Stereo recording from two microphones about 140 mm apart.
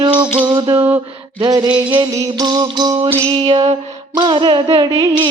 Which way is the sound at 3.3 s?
40° right (ahead or behind).